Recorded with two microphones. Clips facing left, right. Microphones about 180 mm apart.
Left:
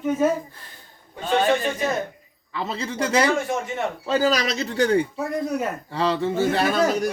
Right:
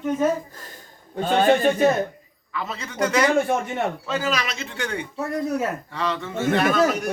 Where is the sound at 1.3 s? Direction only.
55° right (ahead or behind).